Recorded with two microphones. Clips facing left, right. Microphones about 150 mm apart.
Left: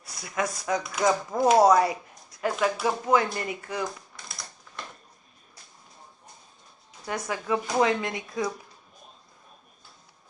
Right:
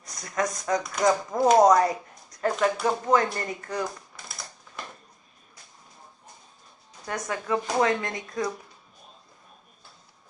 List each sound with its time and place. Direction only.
0.0 s speech: 5° left (ahead or behind)
7.1 s speech: 10° left (ahead or behind)